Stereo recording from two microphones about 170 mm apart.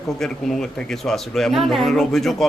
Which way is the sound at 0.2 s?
Centre (ahead or behind).